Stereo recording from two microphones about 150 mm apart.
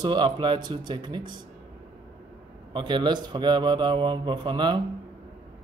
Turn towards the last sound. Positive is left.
turn(degrees=-30)  # may be behind; listen again after turning